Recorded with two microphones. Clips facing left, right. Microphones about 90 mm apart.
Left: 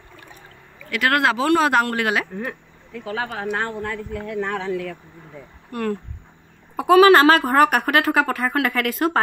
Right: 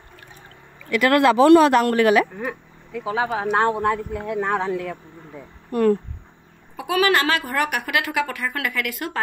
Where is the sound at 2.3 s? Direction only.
5° right (ahead or behind).